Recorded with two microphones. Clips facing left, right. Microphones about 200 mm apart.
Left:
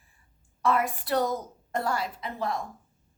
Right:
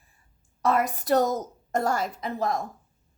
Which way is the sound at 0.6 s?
40° right (ahead or behind).